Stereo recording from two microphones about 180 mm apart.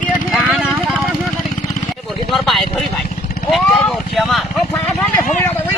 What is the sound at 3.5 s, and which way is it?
Vehicle, centre (ahead or behind).